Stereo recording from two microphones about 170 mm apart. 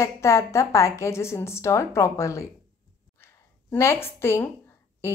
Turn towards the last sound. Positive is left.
turn(degrees=15)  # may be behind; listen again after turning